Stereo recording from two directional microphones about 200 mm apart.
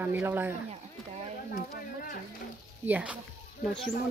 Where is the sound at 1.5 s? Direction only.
45° left (ahead or behind).